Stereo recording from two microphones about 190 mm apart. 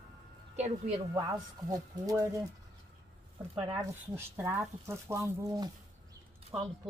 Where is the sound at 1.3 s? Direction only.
20° right (ahead or behind).